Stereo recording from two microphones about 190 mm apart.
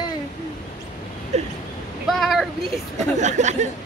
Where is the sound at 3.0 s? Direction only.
40° right (ahead or behind).